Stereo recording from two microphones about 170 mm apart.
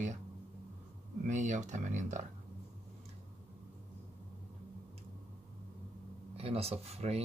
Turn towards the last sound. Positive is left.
turn(degrees=-40)  # may be behind; listen again after turning